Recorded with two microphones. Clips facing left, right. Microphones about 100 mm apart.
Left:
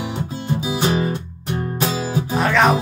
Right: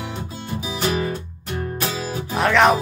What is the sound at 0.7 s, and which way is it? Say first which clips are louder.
Music: left 2 dB; 30° left (ahead or behind).